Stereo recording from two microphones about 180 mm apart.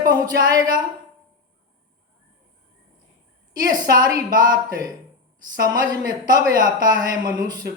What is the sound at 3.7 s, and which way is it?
Speech, 50° right (ahead or behind).